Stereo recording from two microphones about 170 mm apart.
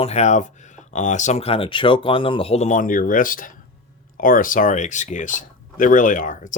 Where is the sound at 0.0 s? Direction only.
40° left (ahead or behind).